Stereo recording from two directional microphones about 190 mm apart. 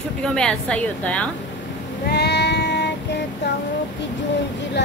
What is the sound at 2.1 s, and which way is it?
Child singing, 60° left (ahead or behind).